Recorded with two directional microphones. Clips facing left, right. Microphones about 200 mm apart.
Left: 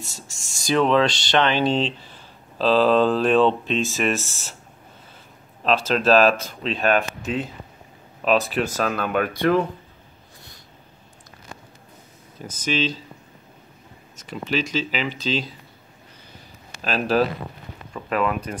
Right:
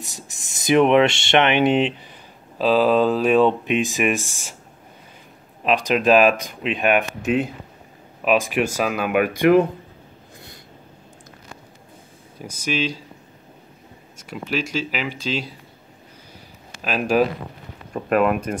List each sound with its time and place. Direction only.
0.0 s speech: 15° right (ahead or behind)
5.6 s speech: 15° right (ahead or behind)
8.2 s speech: 10° right (ahead or behind)
12.4 s speech: 10° right (ahead or behind)
14.1 s speech: 10° right (ahead or behind)
16.8 s speech: 10° right (ahead or behind)
17.9 s speech: 50° right (ahead or behind)